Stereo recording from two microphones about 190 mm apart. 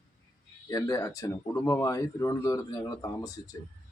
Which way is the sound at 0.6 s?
20° left (ahead or behind).